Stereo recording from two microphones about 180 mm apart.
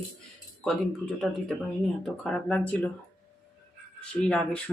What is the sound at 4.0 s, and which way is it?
Speech, 5° left (ahead or behind).